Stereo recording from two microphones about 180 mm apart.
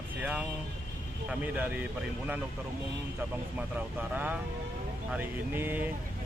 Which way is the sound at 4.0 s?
10° right (ahead or behind).